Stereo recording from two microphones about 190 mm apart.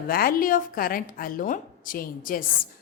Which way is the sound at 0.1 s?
50° left (ahead or behind).